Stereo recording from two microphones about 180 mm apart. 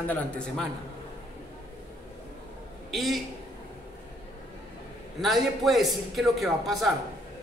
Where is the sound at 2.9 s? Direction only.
Centre (ahead or behind).